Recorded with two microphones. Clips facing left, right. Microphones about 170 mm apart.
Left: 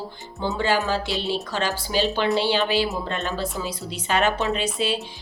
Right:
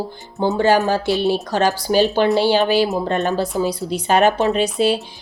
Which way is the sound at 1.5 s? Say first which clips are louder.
Right 8 dB; 40° right (ahead or behind).